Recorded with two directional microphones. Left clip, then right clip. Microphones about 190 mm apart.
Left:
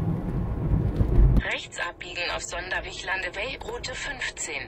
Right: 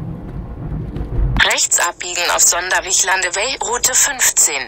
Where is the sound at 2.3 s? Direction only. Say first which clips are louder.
Right 15 dB; 50° right (ahead or behind).